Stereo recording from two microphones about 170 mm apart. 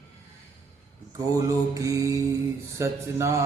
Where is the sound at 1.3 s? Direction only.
20° right (ahead or behind).